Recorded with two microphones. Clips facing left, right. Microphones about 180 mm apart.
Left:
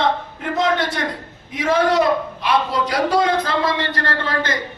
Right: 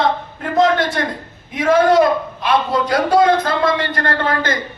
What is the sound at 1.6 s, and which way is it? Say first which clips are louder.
A man's voice: right 5 dB; 50° right (ahead or behind).